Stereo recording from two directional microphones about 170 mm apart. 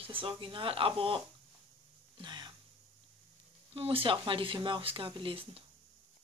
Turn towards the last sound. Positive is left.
turn(degrees=-30)  # may be behind; listen again after turning